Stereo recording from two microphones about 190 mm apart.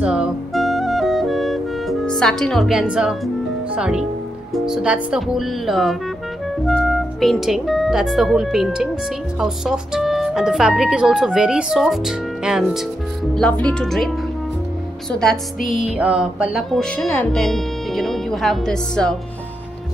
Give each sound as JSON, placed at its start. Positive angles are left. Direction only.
{"t": 0.0, "sound": "music", "side_deg": -5}
{"t": 3.7, "sound": "a woman's voice", "side_deg": -5}